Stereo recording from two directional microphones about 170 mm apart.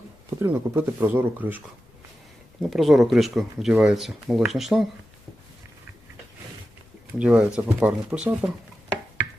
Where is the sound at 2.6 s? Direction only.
Centre (ahead or behind).